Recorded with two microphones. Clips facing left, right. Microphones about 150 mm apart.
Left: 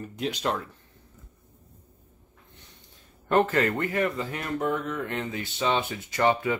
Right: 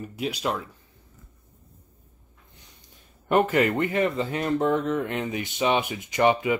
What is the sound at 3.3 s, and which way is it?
Speech, 15° right (ahead or behind).